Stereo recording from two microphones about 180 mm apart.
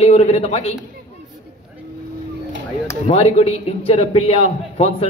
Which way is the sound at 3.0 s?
35° left (ahead or behind).